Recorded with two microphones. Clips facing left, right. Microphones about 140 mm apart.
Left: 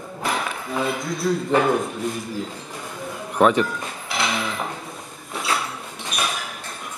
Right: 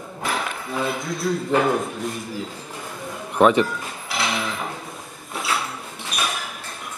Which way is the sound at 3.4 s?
Centre (ahead or behind).